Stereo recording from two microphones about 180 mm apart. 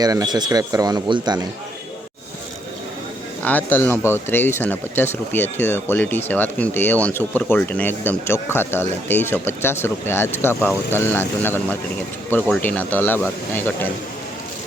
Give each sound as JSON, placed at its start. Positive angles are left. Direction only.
{"t": 0.0, "sound": "speech", "side_deg": -20}
{"t": 3.4, "sound": "speech", "side_deg": 10}